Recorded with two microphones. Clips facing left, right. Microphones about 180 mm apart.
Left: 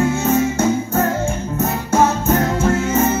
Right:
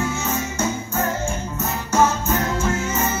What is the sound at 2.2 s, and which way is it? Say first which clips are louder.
Music: left 6 dB; 60° left (ahead or behind).